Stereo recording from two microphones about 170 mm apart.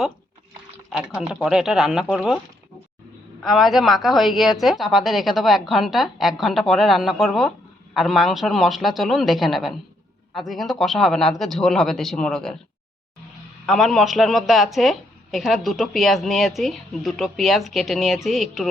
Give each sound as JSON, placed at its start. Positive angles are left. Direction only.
{"t": 0.9, "sound": "a woman's voice", "side_deg": 0}
{"t": 3.4, "sound": "a woman's voice", "side_deg": 0}
{"t": 13.7, "sound": "a woman's voice", "side_deg": 0}